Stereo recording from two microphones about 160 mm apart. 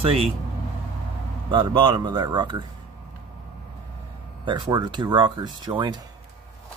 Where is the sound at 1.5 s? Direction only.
30° right (ahead or behind).